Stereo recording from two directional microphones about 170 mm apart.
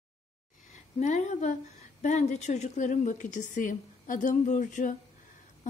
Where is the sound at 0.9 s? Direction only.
45° left (ahead or behind).